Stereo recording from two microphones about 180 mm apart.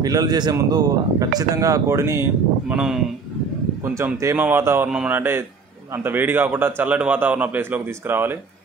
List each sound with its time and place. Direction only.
0.0 s speech: 20° right (ahead or behind)
2.7 s speech: 5° right (ahead or behind)
3.8 s a man's voice: 15° right (ahead or behind)